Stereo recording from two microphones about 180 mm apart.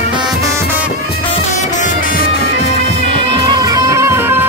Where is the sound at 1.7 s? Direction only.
45° left (ahead or behind).